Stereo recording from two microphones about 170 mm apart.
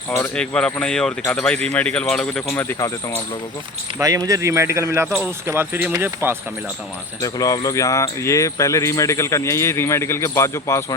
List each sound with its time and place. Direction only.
0.1 s speech: 10° left (ahead or behind)
3.9 s speech: 20° right (ahead or behind)
7.2 s speech: 20° left (ahead or behind)